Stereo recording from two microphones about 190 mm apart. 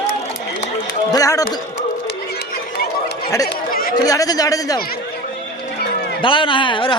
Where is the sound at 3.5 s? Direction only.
50° left (ahead or behind).